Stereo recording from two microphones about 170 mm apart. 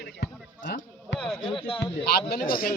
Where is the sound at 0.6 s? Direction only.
50° left (ahead or behind).